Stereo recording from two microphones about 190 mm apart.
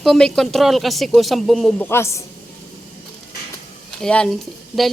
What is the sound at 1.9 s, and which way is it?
Speech, 15° left (ahead or behind).